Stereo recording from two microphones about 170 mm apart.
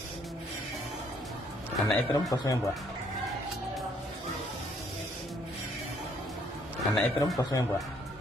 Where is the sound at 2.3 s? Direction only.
20° left (ahead or behind).